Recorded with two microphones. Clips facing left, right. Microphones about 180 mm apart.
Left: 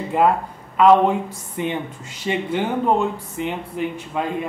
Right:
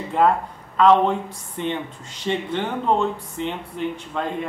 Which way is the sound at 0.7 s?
10° left (ahead or behind).